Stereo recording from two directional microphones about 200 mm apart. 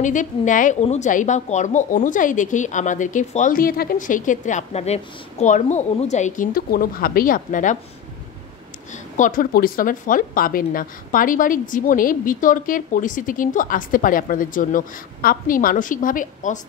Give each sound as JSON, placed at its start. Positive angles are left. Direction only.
{"t": 0.0, "sound": "a woman's voice", "side_deg": 40}
{"t": 9.1, "sound": "speech", "side_deg": 40}